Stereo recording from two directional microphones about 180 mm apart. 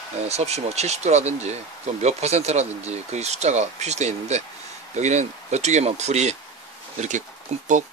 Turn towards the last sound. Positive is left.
turn(degrees=-40)  # may be behind; listen again after turning